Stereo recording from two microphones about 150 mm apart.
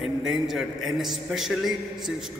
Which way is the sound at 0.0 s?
Centre (ahead or behind).